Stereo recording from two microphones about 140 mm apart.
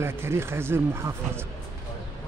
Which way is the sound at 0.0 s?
15° right (ahead or behind).